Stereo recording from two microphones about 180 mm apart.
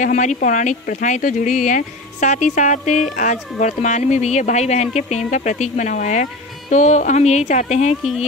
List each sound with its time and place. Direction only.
0.0 s speech: 40° left (ahead or behind)